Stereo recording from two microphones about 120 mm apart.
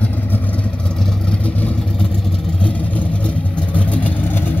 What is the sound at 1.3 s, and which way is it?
Vehicle, 10° left (ahead or behind).